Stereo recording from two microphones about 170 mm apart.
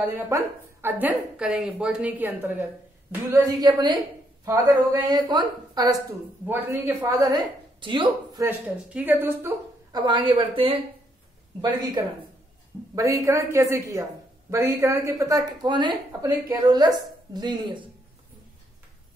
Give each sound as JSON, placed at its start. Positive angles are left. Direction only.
{"t": 0.0, "sound": "a woman's voice", "side_deg": -15}
{"t": 6.4, "sound": "speech", "side_deg": -10}
{"t": 8.5, "sound": "a woman's voice", "side_deg": -10}
{"t": 9.9, "sound": "a woman's voice", "side_deg": -30}